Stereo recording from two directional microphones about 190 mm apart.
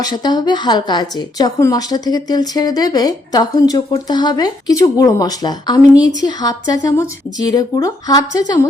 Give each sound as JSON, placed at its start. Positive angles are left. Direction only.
{"t": 0.0, "sound": "a woman's voice", "side_deg": 20}